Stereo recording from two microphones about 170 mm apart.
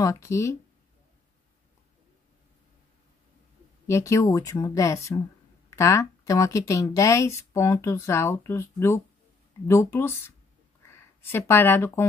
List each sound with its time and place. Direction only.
0.0 s speech: 20° left (ahead or behind)
3.8 s speech: 15° left (ahead or behind)